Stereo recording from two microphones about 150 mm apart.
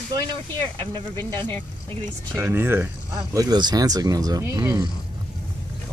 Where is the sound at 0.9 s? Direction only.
30° right (ahead or behind).